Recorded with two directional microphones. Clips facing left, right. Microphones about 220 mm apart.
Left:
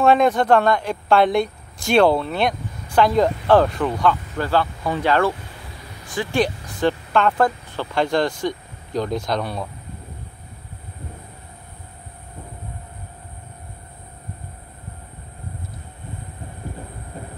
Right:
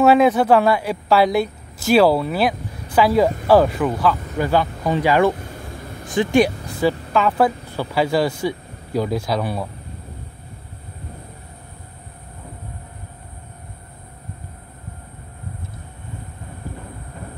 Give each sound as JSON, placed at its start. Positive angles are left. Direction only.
{"t": 0.0, "sound": "a woman's voice", "side_deg": -5}
{"t": 5.6, "sound": "vehicle", "side_deg": -50}
{"t": 6.1, "sound": "speech", "side_deg": -10}